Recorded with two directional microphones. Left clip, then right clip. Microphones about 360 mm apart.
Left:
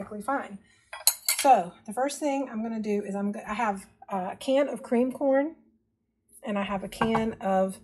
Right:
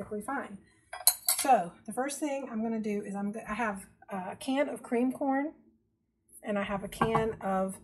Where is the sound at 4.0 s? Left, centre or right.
Left.